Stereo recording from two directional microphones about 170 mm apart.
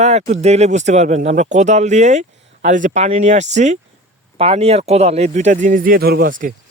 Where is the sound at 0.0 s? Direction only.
40° right (ahead or behind).